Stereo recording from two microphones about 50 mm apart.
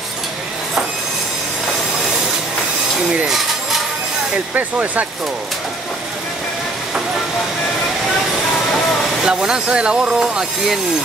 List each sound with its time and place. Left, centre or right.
3.3 s a sound: centre
4.6 s speech: right
8.7 s speech: centre